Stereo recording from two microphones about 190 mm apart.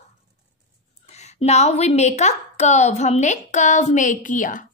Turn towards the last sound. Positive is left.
turn(degrees=45)  # may be behind; listen again after turning